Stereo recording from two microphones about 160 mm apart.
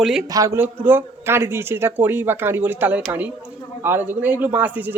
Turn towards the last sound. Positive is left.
turn(degrees=-10)  # may be behind; listen again after turning